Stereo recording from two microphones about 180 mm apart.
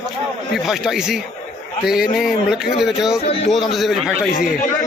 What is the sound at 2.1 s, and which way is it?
A man's voice, centre (ahead or behind).